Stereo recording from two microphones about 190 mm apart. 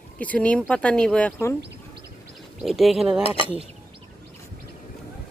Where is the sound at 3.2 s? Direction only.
25° left (ahead or behind).